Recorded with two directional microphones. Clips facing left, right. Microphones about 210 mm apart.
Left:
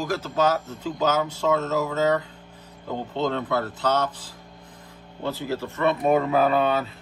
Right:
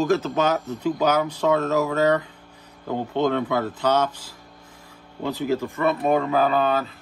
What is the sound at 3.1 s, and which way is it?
Speech, 15° right (ahead or behind).